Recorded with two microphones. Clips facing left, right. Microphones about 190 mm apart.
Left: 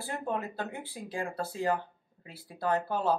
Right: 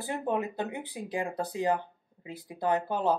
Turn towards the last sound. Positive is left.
turn(degrees=-15)  # may be behind; listen again after turning